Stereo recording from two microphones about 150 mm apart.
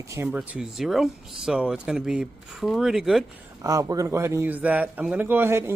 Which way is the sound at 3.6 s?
25° right (ahead or behind).